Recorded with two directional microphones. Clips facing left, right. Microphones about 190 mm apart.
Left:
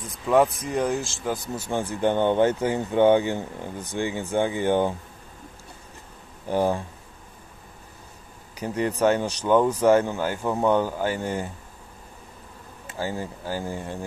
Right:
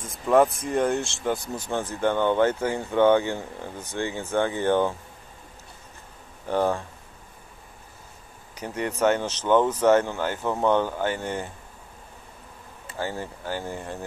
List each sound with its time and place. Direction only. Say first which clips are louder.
0.0 s speech: right 1 dB; centre (ahead or behind)
1.7 s speech: left 1 dB; 15° left (ahead or behind)
6.4 s speech: left 1 dB; 15° left (ahead or behind)
9.0 s speech: even; 15° left (ahead or behind)
13.0 s speech: left 1 dB; 15° left (ahead or behind)